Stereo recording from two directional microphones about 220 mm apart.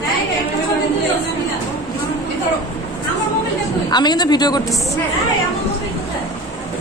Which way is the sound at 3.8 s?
20° left (ahead or behind).